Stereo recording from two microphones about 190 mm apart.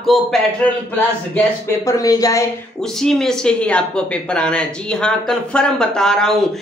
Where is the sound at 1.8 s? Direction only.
15° left (ahead or behind).